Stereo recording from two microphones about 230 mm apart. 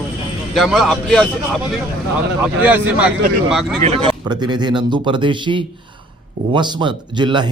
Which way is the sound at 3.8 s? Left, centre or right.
Right.